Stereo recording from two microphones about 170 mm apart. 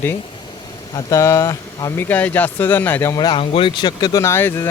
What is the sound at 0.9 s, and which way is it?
Speech, 20° left (ahead or behind).